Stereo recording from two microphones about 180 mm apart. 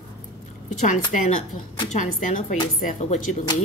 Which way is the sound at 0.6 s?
45° left (ahead or behind).